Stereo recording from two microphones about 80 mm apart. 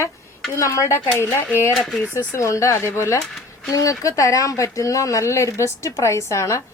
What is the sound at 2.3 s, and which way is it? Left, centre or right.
Speech, left.